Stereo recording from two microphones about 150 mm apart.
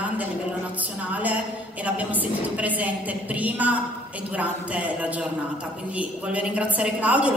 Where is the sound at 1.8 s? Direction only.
10° right (ahead or behind).